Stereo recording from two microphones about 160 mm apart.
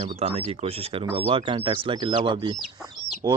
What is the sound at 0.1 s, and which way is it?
Speech, 40° right (ahead or behind).